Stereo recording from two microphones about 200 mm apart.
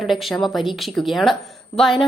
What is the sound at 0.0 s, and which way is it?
A woman's voice, centre (ahead or behind).